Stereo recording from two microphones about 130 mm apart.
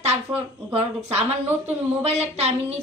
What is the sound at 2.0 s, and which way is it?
Speech, 50° right (ahead or behind).